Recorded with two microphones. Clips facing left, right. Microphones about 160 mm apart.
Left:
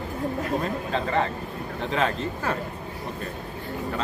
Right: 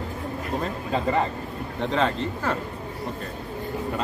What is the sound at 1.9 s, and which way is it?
Speech, 10° left (ahead or behind).